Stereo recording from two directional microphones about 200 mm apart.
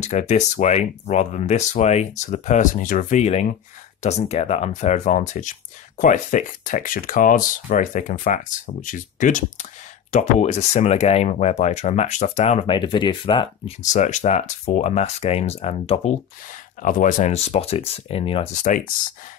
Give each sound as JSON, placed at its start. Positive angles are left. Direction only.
{"t": 0.0, "sound": "speech", "side_deg": 35}
{"t": 13.9, "sound": "speech", "side_deg": 35}